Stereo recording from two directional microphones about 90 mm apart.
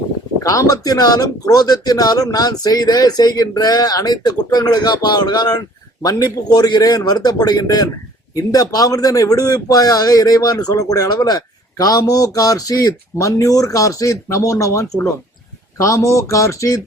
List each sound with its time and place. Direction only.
0.4 s a man's voice: 40° left (ahead or behind)